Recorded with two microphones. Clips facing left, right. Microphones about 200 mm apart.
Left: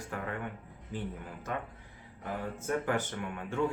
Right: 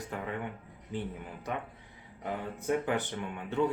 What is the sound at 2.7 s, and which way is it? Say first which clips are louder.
Speech: right 2 dB; 20° right (ahead or behind).